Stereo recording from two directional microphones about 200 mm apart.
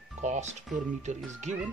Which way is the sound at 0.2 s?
35° right (ahead or behind).